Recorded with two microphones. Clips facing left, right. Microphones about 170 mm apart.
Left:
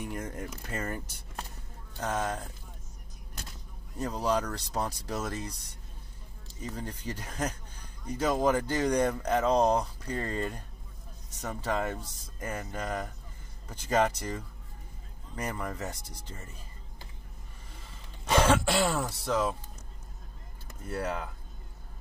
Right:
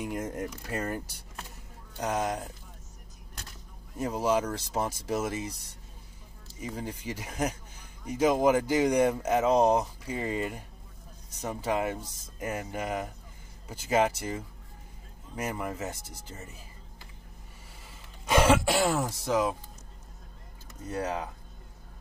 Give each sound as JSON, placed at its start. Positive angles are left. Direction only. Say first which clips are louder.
{"t": 0.0, "sound": "speech", "louder": "right 4 dB", "side_deg": -15}
{"t": 4.0, "sound": "speech", "louder": "right 2 dB", "side_deg": -10}
{"t": 18.3, "sound": "throat clearing", "louder": "right 2 dB", "side_deg": -10}
{"t": 19.2, "sound": "speech", "louder": "right 2 dB", "side_deg": -15}
{"t": 20.8, "sound": "speech", "louder": "right 1 dB", "side_deg": -15}